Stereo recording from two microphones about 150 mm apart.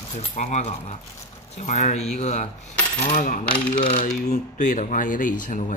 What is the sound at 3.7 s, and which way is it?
Speech, 65° left (ahead or behind).